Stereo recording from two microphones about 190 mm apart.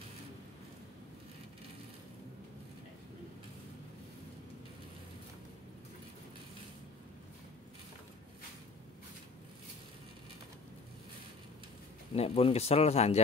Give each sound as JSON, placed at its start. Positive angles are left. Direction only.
{"t": 12.2, "sound": "speech", "side_deg": 30}